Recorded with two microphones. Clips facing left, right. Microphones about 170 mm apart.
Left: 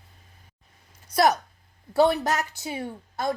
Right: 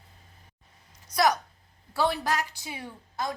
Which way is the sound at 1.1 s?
30° left (ahead or behind).